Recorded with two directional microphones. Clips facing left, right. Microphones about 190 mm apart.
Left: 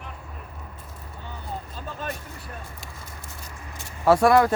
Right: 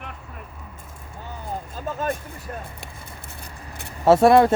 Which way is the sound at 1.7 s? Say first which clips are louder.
Right 10 dB; 45° right (ahead or behind).